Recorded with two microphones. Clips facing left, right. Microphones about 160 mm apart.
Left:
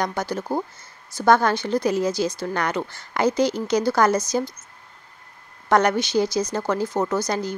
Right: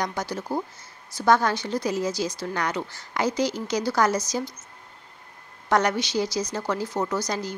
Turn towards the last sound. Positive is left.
turn(degrees=55)  # may be behind; listen again after turning